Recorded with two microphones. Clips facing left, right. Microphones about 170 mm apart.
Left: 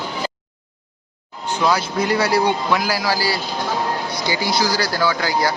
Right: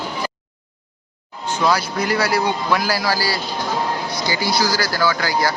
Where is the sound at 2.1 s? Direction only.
25° left (ahead or behind).